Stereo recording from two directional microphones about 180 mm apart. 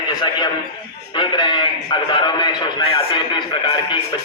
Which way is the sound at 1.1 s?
25° left (ahead or behind).